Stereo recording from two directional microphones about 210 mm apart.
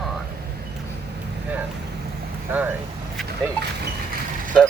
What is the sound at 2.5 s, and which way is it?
Speech, 10° right (ahead or behind).